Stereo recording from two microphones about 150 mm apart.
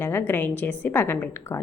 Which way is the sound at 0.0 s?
15° left (ahead or behind).